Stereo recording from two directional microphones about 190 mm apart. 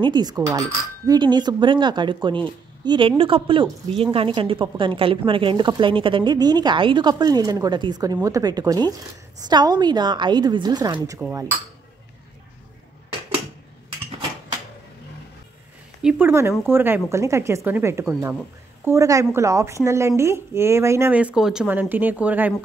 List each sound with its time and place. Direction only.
0.0 s a woman's voice: 20° right (ahead or behind)
16.0 s speech: 5° right (ahead or behind)